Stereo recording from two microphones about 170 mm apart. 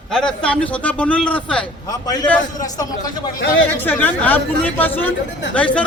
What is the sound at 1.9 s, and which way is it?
Speech, 20° left (ahead or behind).